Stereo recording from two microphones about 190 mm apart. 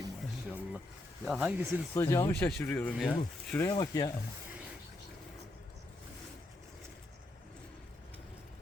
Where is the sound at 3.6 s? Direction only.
20° left (ahead or behind).